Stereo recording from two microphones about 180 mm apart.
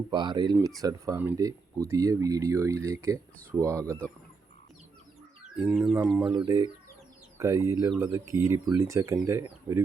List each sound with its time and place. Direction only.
0.1 s speech: 25° right (ahead or behind)
5.5 s bird: 5° right (ahead or behind)
6.2 s speech: 25° right (ahead or behind)